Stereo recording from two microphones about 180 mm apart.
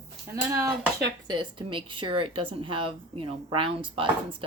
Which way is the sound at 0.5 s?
20° right (ahead or behind).